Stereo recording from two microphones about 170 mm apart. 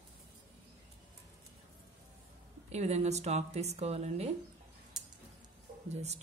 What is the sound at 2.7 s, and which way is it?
Speech, 40° right (ahead or behind).